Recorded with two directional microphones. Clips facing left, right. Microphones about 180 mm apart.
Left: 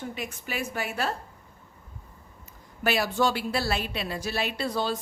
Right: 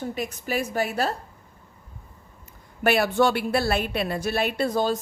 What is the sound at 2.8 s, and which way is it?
A woman's voice, 60° right (ahead or behind).